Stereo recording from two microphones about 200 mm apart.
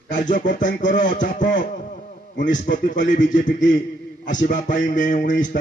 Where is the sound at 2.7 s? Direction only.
55° left (ahead or behind).